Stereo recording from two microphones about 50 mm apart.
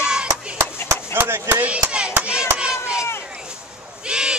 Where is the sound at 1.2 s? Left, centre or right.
Right.